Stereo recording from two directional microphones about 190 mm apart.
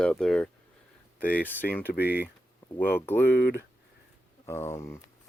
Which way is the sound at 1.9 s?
55° left (ahead or behind).